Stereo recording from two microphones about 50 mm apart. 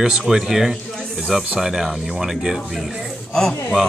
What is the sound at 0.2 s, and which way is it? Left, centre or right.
Speech, centre.